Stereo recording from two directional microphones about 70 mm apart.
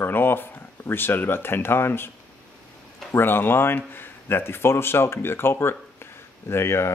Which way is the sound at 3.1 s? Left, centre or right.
Left.